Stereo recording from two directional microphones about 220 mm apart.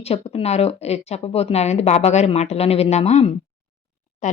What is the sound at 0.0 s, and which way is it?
A woman's voice, 30° left (ahead or behind).